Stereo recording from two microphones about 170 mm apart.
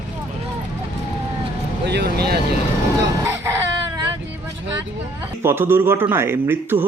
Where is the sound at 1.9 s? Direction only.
75° right (ahead or behind).